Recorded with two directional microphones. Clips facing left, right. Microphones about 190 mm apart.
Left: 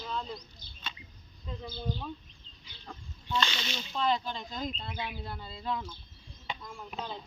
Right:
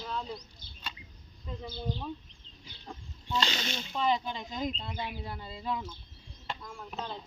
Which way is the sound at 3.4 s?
45° right (ahead or behind).